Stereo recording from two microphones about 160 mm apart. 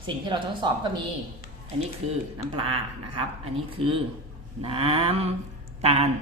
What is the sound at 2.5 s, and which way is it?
Cattle, 35° right (ahead or behind).